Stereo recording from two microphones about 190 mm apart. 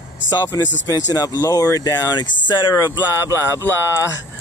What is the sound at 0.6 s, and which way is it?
Speech, 75° left (ahead or behind).